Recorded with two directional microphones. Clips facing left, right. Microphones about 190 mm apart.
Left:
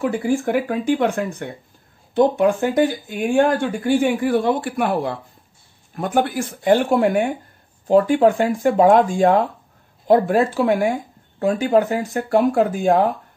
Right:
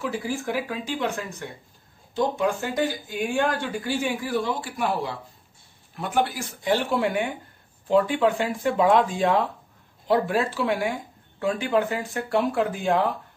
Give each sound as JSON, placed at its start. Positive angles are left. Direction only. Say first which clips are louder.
{"t": 0.0, "sound": "speech", "louder": "left 8 dB", "side_deg": 55}